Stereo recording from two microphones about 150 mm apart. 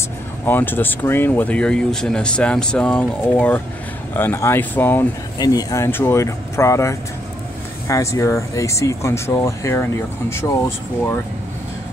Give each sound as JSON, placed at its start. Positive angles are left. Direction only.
{"t": 0.5, "sound": "speech", "side_deg": 15}
{"t": 5.4, "sound": "speech", "side_deg": 25}